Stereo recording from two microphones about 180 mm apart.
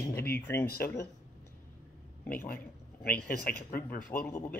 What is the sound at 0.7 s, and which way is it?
Speech, 60° left (ahead or behind).